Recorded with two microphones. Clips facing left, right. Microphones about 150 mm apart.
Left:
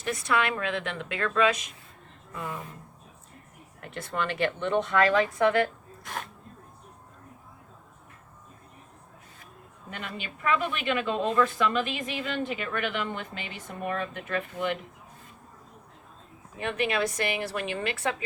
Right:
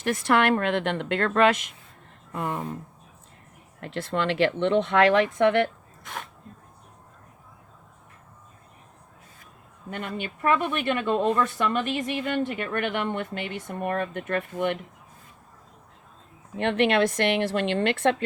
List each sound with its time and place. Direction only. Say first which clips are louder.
0.0 s speech: right 5 dB; 65° right (ahead or behind)
3.8 s speech: right 4 dB; 75° right (ahead or behind)
9.9 s speech: right 6 dB; 50° right (ahead or behind)
16.6 s speech: right 6 dB; 70° right (ahead or behind)